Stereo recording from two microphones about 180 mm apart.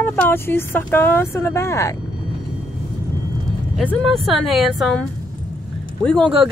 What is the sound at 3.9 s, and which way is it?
A woman's voice, centre (ahead or behind).